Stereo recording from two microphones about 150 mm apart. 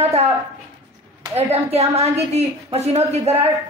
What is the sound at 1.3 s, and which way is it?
A man's voice, 45° right (ahead or behind).